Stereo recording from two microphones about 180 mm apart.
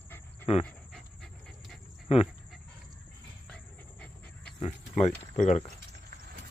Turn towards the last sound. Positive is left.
turn(degrees=40)  # may be behind; listen again after turning